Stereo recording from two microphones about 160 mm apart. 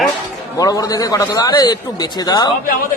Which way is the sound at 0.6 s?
20° left (ahead or behind).